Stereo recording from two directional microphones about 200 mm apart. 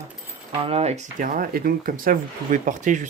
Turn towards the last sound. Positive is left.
turn(degrees=-40)  # may be behind; listen again after turning